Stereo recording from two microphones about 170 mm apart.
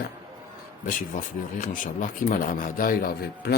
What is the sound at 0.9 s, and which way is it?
A man's voice, 50° left (ahead or behind).